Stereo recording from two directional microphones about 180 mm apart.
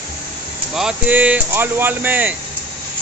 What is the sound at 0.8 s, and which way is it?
Speech, 5° right (ahead or behind).